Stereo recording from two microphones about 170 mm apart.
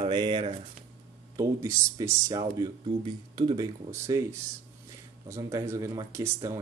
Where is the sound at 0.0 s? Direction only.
30° right (ahead or behind).